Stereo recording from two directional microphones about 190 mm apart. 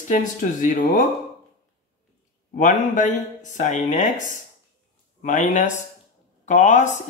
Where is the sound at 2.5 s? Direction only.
40° left (ahead or behind).